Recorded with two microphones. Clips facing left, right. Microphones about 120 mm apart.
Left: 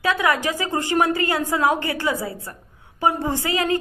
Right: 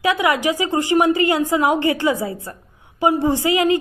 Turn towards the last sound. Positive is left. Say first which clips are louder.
# right 6 dB
turn(degrees=-15)  # may be behind; listen again after turning